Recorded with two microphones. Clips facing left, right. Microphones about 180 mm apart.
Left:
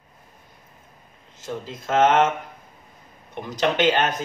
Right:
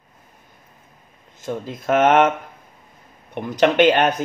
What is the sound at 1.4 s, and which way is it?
Speech, 55° right (ahead or behind).